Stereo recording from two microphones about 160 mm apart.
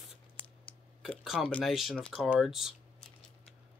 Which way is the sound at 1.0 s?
Centre (ahead or behind).